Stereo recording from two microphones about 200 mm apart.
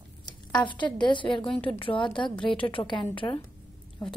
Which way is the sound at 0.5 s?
25° left (ahead or behind).